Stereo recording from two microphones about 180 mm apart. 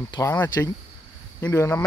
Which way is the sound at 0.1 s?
15° left (ahead or behind).